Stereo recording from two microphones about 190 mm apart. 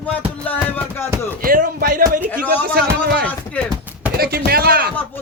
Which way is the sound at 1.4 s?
50° right (ahead or behind).